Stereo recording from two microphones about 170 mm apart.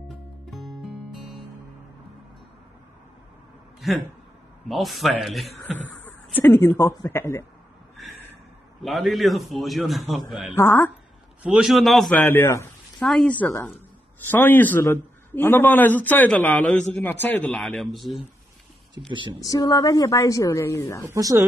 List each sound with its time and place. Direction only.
0.5 s music: centre (ahead or behind)
3.8 s a man's voice: centre (ahead or behind)
6.0 s speech: 10° left (ahead or behind)
8.8 s a man's voice: centre (ahead or behind)
10.5 s a man's voice: 15° left (ahead or behind)
11.4 s a man's voice: 5° right (ahead or behind)
12.2 s a man's voice: 10° left (ahead or behind)
13.0 s a man's voice: 5° left (ahead or behind)
19.0 s a woman's voice: 30° right (ahead or behind)
19.4 s a woman's voice: 20° left (ahead or behind)
21.1 s speech: 20° right (ahead or behind)